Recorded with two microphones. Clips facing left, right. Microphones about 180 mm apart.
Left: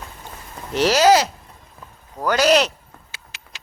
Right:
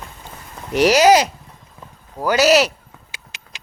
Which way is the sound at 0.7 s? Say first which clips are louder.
Right 2 dB; 15° right (ahead or behind).